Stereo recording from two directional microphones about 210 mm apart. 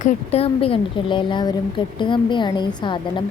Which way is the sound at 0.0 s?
30° left (ahead or behind).